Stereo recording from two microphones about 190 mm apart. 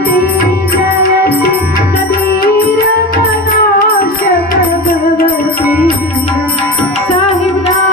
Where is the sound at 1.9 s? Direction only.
55° left (ahead or behind).